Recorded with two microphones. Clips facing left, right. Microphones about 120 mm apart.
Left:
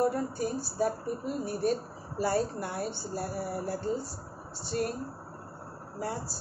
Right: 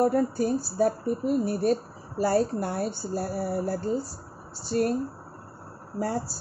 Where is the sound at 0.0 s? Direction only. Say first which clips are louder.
Right 5 dB; 50° right (ahead or behind).